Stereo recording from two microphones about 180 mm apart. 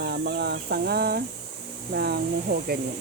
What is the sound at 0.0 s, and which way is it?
Speech, 60° right (ahead or behind).